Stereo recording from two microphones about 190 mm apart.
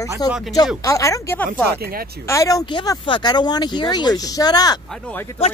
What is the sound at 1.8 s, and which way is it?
Speech, 50° right (ahead or behind).